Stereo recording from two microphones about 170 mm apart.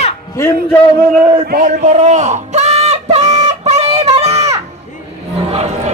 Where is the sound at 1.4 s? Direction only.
50° right (ahead or behind).